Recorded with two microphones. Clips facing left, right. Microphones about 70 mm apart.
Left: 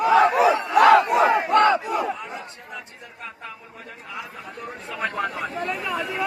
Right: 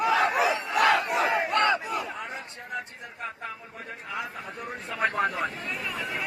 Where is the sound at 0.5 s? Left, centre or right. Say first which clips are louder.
Left 8 dB; left.